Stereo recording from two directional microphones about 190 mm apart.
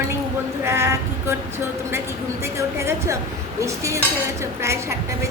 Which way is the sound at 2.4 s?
15° right (ahead or behind).